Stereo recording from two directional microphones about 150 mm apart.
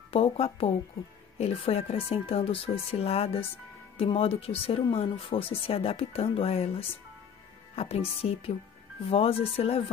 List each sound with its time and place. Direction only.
0.1 s speech: 40° left (ahead or behind)